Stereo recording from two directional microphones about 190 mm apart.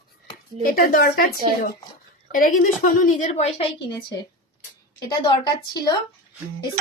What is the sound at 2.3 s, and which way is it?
A woman's voice, 50° left (ahead or behind).